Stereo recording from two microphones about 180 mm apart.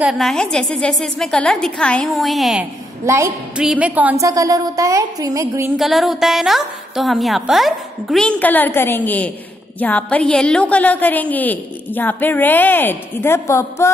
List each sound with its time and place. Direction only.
0.0 s a woman's voice: centre (ahead or behind)
3.1 s a woman's voice: 15° right (ahead or behind)
4.3 s a woman's voice: 20° right (ahead or behind)
5.8 s a woman's voice: centre (ahead or behind); by 13.9 s 15° left (ahead or behind)